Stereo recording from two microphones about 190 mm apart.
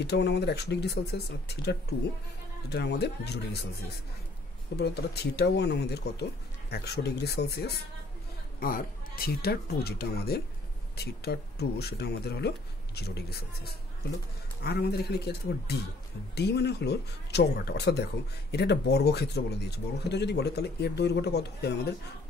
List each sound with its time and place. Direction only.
0.0 s speech: 60° left (ahead or behind)
4.7 s speech: 60° left (ahead or behind)